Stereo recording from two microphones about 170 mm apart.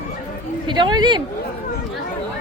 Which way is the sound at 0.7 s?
25° right (ahead or behind).